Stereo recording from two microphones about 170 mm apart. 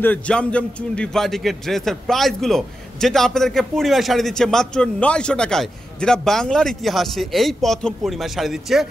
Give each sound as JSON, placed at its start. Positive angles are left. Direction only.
{"t": 0.0, "sound": "a man's voice", "side_deg": 10}